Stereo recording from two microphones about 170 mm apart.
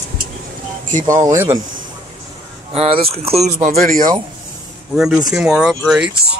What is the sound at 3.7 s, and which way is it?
Speech, 55° right (ahead or behind).